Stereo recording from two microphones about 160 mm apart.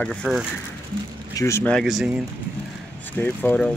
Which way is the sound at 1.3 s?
20° left (ahead or behind).